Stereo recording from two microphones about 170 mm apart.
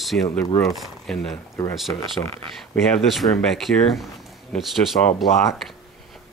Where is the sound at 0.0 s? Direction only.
Centre (ahead or behind).